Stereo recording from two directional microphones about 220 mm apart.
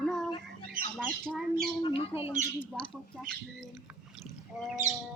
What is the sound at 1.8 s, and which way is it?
Speech, 25° left (ahead or behind).